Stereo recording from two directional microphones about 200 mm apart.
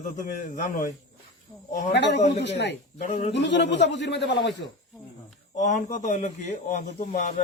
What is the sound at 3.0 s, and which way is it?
Speech, 35° left (ahead or behind).